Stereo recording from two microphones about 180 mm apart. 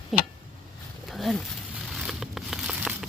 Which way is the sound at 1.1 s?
Centre (ahead or behind).